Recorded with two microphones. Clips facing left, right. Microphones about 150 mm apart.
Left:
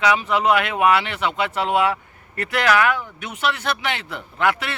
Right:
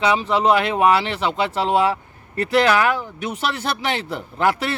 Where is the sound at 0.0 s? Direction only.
30° right (ahead or behind).